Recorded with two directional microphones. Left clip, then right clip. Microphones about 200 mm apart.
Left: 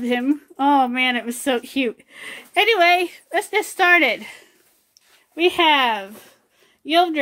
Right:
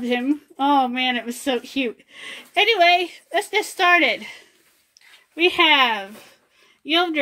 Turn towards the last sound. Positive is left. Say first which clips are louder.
# left 3 dB
turn(degrees=5)  # may be behind; listen again after turning